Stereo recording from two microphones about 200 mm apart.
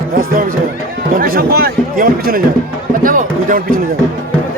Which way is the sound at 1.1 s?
45° right (ahead or behind).